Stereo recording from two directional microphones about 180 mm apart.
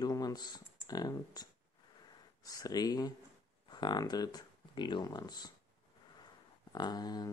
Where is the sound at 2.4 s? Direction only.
20° left (ahead or behind).